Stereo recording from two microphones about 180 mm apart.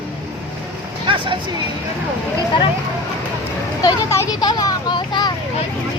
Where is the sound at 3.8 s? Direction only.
20° left (ahead or behind).